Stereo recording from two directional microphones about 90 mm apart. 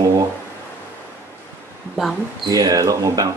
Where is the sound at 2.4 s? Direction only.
45° right (ahead or behind).